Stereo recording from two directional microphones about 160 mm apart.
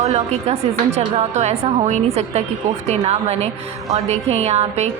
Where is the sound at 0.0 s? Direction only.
45° right (ahead or behind).